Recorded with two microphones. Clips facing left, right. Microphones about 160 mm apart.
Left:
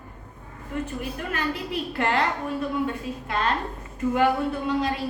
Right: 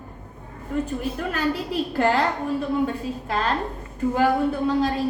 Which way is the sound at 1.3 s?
35° right (ahead or behind).